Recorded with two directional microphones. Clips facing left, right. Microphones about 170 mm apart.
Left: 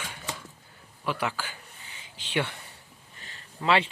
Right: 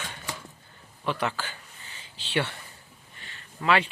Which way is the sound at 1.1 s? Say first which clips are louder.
Right 1 dB; 10° left (ahead or behind).